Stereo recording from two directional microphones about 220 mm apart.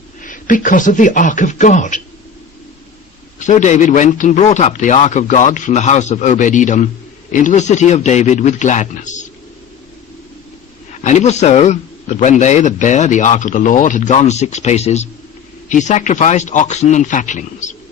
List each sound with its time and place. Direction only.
0.2 s a man's voice: 35° left (ahead or behind)
3.3 s a man's voice: 35° left (ahead or behind)
11.0 s a man's voice: 30° left (ahead or behind)